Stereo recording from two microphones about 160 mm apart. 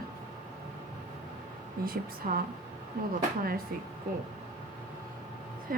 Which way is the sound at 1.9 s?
65° right (ahead or behind).